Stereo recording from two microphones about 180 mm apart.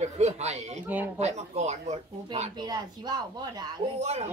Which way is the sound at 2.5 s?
25° right (ahead or behind).